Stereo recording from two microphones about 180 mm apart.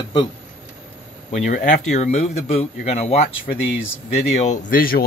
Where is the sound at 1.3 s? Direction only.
45° left (ahead or behind).